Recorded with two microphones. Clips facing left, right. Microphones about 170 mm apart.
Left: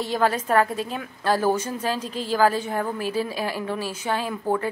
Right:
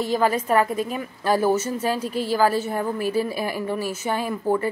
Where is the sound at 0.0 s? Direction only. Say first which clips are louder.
Right 2 dB; 10° right (ahead or behind).